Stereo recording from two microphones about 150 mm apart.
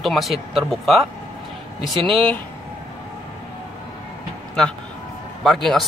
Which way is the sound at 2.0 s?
5° left (ahead or behind).